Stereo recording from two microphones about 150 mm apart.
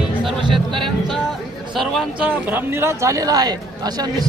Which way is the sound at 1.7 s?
Centre (ahead or behind).